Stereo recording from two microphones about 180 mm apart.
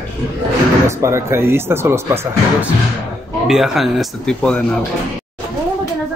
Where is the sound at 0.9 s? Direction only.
15° right (ahead or behind).